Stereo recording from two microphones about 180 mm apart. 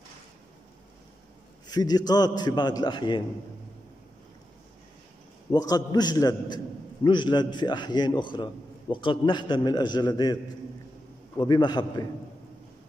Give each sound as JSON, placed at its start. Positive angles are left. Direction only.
{"t": 1.7, "sound": "a man's voice", "side_deg": 20}
{"t": 5.5, "sound": "a man's voice", "side_deg": 20}
{"t": 11.3, "sound": "a man's voice", "side_deg": 25}